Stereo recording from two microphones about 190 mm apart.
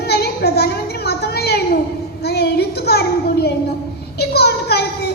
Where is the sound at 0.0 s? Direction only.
60° left (ahead or behind).